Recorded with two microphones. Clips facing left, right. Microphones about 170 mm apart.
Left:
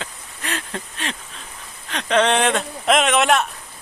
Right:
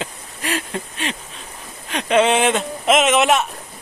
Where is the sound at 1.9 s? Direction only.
10° right (ahead or behind).